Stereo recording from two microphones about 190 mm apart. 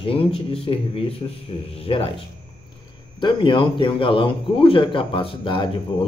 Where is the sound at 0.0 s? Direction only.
30° left (ahead or behind).